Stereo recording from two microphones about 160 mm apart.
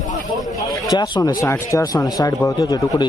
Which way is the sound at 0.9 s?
25° left (ahead or behind).